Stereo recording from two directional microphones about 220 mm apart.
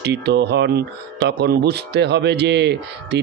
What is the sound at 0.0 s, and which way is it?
Speech, 50° right (ahead or behind).